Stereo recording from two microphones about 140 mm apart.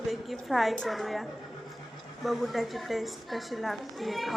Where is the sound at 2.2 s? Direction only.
Centre (ahead or behind).